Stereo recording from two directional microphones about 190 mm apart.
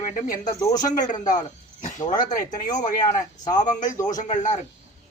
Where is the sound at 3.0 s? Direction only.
20° left (ahead or behind).